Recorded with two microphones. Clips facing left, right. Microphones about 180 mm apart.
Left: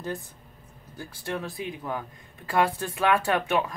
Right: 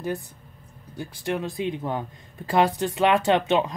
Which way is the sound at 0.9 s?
20° right (ahead or behind).